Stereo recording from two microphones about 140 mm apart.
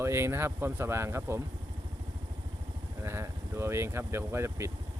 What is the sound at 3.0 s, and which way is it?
Speech, 20° right (ahead or behind).